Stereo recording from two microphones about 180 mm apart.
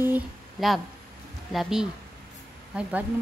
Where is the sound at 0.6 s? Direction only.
Centre (ahead or behind).